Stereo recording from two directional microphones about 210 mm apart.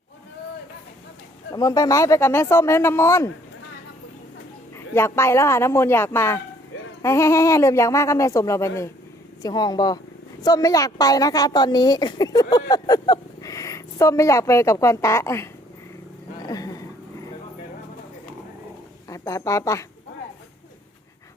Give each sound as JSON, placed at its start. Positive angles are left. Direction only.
{"t": 1.5, "sound": "a woman's voice", "side_deg": 15}
{"t": 4.9, "sound": "a woman's voice", "side_deg": 10}
{"t": 16.4, "sound": "a sound", "side_deg": 15}
{"t": 19.0, "sound": "a woman's voice", "side_deg": 15}